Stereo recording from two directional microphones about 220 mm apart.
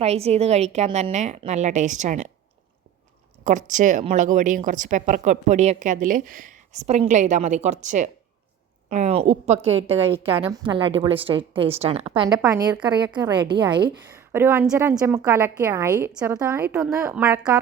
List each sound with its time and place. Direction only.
0.0 s a woman's voice: 30° right (ahead or behind)
3.7 s a woman's voice: 35° right (ahead or behind)
12.4 s a woman's voice: 15° right (ahead or behind)